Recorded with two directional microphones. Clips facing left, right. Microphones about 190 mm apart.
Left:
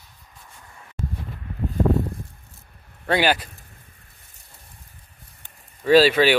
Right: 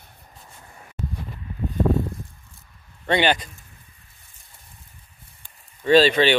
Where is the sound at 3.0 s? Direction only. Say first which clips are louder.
Even; 5° left (ahead or behind).